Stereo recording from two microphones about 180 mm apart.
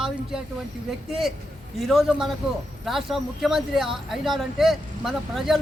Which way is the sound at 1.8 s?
Centre (ahead or behind).